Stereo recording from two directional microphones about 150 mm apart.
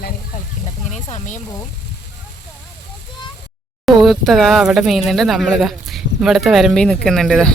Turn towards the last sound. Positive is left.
turn(degrees=0)  # may be behind; listen again after turning